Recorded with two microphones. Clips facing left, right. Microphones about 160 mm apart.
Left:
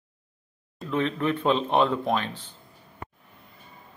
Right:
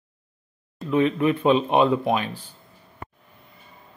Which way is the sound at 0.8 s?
10° right (ahead or behind).